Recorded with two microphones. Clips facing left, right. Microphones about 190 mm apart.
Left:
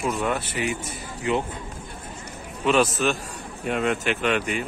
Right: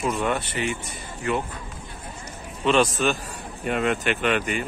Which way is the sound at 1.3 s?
15° left (ahead or behind).